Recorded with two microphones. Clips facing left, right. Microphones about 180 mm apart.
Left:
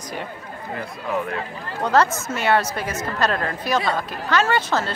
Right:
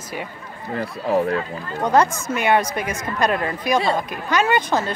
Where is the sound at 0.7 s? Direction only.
35° right (ahead or behind).